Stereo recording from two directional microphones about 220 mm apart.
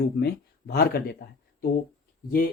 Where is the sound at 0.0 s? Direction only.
45° left (ahead or behind).